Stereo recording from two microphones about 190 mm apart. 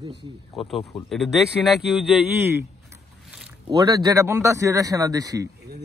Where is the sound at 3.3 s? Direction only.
5° right (ahead or behind).